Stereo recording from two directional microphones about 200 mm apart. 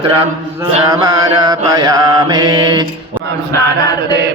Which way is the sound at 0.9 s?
20° right (ahead or behind).